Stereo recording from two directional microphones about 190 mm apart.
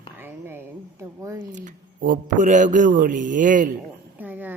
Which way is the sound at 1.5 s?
45° right (ahead or behind).